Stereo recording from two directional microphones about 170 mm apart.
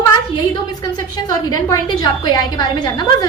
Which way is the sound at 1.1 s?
20° left (ahead or behind).